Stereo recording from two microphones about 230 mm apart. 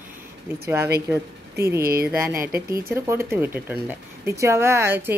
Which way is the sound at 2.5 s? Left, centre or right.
Centre.